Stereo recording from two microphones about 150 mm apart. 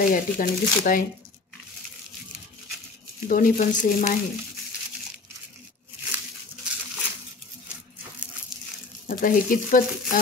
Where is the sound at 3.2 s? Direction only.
60° left (ahead or behind).